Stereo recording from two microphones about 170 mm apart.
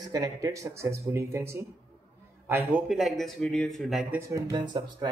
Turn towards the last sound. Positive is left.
turn(degrees=-25)  # may be behind; listen again after turning